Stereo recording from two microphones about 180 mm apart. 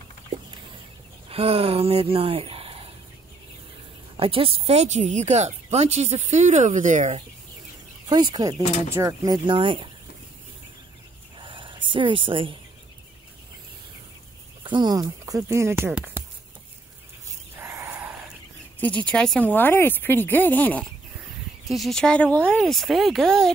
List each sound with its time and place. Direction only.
1.3 s speech: 35° right (ahead or behind)
4.2 s speech: 30° right (ahead or behind)
8.1 s speech: 25° right (ahead or behind)
11.3 s a sound: 30° right (ahead or behind)
14.6 s speech: 25° right (ahead or behind)
17.6 s a sound: 15° right (ahead or behind)
18.8 s speech: 10° left (ahead or behind)